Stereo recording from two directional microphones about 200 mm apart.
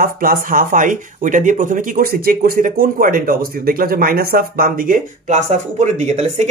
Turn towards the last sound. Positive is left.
turn(degrees=-35)  # may be behind; listen again after turning